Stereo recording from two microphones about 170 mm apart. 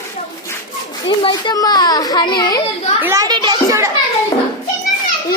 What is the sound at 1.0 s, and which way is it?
A child's voice, 30° left (ahead or behind).